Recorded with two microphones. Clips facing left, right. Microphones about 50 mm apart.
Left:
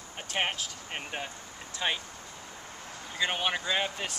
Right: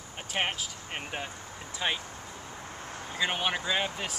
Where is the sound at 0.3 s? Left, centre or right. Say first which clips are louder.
Even; centre.